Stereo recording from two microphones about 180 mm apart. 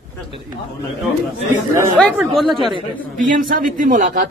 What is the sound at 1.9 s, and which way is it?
Speech, 5° left (ahead or behind).